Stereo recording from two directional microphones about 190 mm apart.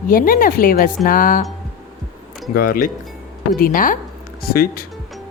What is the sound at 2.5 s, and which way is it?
A woman's voice, 50° left (ahead or behind).